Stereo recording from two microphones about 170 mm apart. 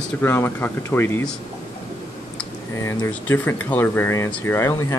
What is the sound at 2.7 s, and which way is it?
Speech, 15° left (ahead or behind).